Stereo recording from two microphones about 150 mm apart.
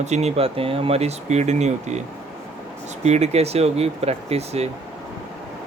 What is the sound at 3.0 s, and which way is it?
Speech, 45° right (ahead or behind).